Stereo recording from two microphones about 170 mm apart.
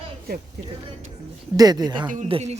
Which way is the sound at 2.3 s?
40° right (ahead or behind).